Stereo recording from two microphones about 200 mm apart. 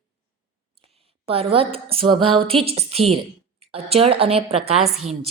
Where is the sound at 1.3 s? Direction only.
30° right (ahead or behind).